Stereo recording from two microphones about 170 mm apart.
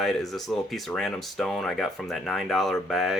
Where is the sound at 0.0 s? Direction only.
Centre (ahead or behind).